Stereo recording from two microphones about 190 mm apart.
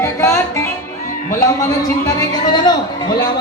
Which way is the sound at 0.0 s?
15° left (ahead or behind).